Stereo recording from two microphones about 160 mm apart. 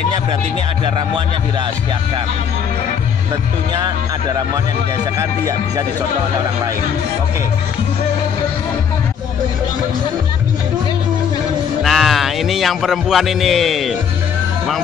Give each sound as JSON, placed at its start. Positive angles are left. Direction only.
{"t": 0.8, "sound": "speech", "side_deg": -30}
{"t": 3.7, "sound": "speech", "side_deg": -25}
{"t": 11.8, "sound": "music", "side_deg": 0}